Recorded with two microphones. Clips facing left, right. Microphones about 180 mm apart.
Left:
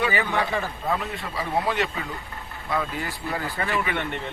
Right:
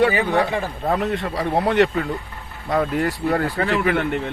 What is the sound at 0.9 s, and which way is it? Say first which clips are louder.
Speech: right 7 dB; 65° right (ahead or behind).